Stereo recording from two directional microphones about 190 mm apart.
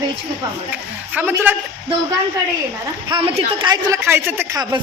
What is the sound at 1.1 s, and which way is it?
Speech, 10° right (ahead or behind).